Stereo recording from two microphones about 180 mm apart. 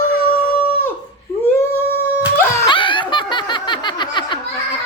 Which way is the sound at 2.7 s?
25° left (ahead or behind).